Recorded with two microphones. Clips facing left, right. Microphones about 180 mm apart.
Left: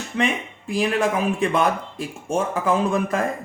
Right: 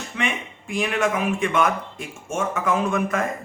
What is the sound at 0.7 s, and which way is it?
Speech, 35° left (ahead or behind).